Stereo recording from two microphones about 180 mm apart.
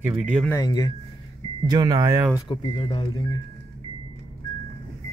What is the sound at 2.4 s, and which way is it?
Speech, 25° left (ahead or behind).